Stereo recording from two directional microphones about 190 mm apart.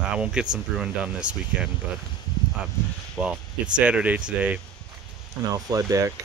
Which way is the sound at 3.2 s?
5° right (ahead or behind).